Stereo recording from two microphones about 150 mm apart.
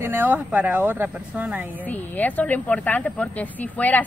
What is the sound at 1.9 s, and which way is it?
A woman's voice, 10° left (ahead or behind).